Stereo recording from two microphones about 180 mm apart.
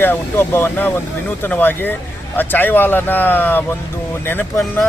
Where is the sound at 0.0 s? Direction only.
10° left (ahead or behind).